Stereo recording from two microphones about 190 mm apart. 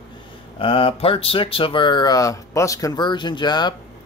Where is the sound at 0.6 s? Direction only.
30° left (ahead or behind).